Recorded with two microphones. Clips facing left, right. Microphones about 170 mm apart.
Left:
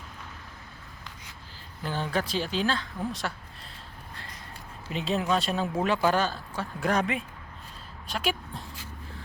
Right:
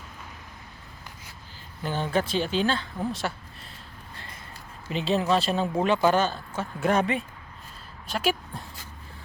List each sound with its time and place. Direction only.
1.9 s speech: 20° right (ahead or behind)
2.1 s speech: centre (ahead or behind)
4.9 s speech: centre (ahead or behind)